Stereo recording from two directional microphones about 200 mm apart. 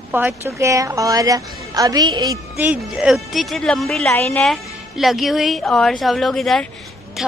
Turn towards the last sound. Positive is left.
turn(degrees=5)  # may be behind; listen again after turning